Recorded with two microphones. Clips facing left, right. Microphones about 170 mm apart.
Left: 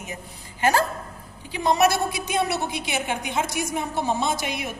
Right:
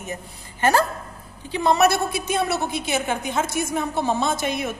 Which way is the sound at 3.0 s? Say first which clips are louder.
Right 2 dB; 45° right (ahead or behind).